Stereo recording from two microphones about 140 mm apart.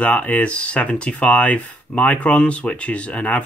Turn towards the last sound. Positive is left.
turn(degrees=10)  # may be behind; listen again after turning